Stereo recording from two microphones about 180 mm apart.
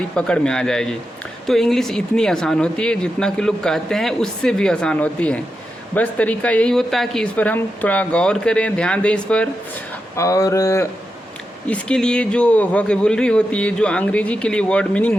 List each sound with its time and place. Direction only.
0.2 s speech: 5° left (ahead or behind)
10.2 s a sound: 20° left (ahead or behind)
11.7 s speech: 5° left (ahead or behind)